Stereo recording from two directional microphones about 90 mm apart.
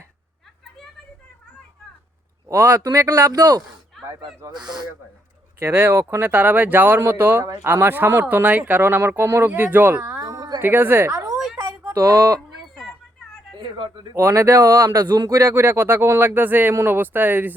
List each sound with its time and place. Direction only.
2.5 s speech: 30° right (ahead or behind); by 4.8 s 50° right (ahead or behind)
5.5 s speech: 25° right (ahead or behind)
10.6 s speech: 25° right (ahead or behind)
11.1 s a sound: 40° right (ahead or behind)
11.9 s speech: 45° right (ahead or behind)
13.7 s a man's voice: 60° right (ahead or behind)
14.1 s speech: 35° right (ahead or behind)
15.5 s speech: 30° right (ahead or behind)